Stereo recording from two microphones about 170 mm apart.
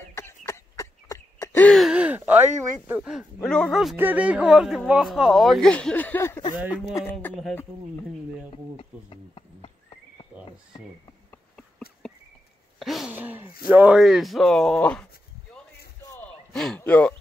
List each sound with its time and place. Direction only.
0.1 s a sound: 15° left (ahead or behind)
4.0 s speech: 10° right (ahead or behind); by 7.3 s 10° left (ahead or behind)
8.7 s horse: 30° left (ahead or behind)
12.0 s insect: centre (ahead or behind)
12.7 s a sound: centre (ahead or behind)
13.7 s speech: 10° right (ahead or behind)
16.5 s speech: 5° left (ahead or behind)